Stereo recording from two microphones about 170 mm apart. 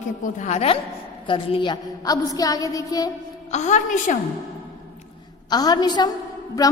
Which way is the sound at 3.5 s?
45° left (ahead or behind).